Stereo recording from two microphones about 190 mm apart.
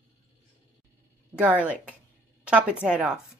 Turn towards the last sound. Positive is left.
turn(degrees=-5)  # may be behind; listen again after turning